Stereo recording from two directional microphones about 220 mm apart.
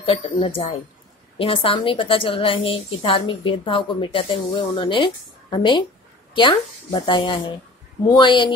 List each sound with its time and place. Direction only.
0.0 s a woman's voice: 25° left (ahead or behind)